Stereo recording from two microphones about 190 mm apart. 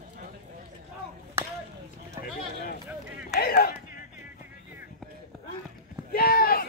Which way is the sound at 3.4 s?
55° left (ahead or behind).